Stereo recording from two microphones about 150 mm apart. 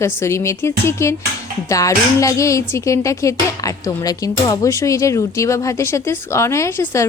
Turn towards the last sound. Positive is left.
turn(degrees=20)  # may be behind; listen again after turning